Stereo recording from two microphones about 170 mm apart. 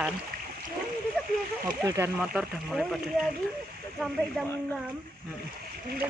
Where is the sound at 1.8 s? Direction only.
20° right (ahead or behind).